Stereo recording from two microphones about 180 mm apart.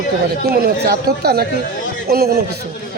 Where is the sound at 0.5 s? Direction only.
60° right (ahead or behind).